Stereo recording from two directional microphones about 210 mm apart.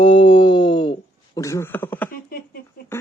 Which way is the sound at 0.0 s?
20° left (ahead or behind).